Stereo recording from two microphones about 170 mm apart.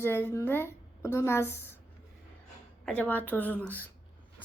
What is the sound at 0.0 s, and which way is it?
A woman's voice, 15° left (ahead or behind).